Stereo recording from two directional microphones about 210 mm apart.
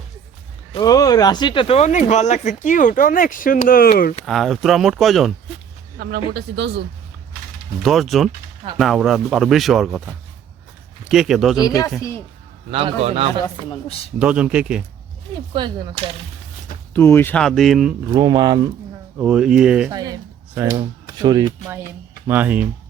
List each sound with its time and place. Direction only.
0.7 s speech: 20° left (ahead or behind); by 4.1 s 45° left (ahead or behind)
4.3 s speech: centre (ahead or behind)
6.0 s speech: 50° right (ahead or behind)
7.8 s speech: centre (ahead or behind)
11.6 s speech: 15° left (ahead or behind)
12.7 s a man's voice: 30° right (ahead or behind)
13.8 s speech: 30° left (ahead or behind)
14.2 s speech: 5° right (ahead or behind)
15.5 s a man's voice: 20° right (ahead or behind)
16.9 s speech: 10° left (ahead or behind)
18.1 s a man's voice: 20° right (ahead or behind)
19.2 s speech: 5° right (ahead or behind)
19.9 s speech: 20° right (ahead or behind)
22.3 s speech: 5° right (ahead or behind)